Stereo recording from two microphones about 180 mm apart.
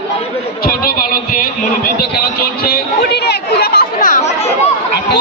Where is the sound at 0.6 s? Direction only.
55° left (ahead or behind).